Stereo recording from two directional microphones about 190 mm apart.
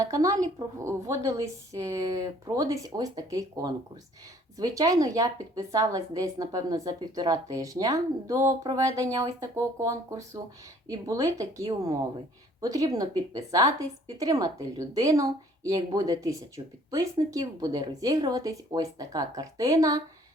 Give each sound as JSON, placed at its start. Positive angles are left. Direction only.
{"t": 0.0, "sound": "a woman's voice", "side_deg": -15}